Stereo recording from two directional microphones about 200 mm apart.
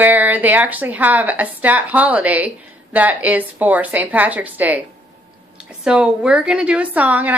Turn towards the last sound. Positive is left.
turn(degrees=-10)  # may be behind; listen again after turning